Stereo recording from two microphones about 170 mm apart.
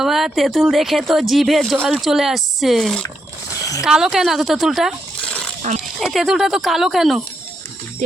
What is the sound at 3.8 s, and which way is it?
Speech, 5° right (ahead or behind).